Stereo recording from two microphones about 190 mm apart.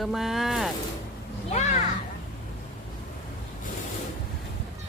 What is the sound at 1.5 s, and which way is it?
Speech, 35° left (ahead or behind).